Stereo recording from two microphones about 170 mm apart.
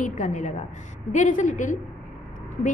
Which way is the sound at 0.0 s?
45° left (ahead or behind).